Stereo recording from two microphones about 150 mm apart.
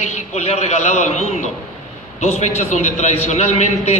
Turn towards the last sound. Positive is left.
turn(degrees=45)  # may be behind; listen again after turning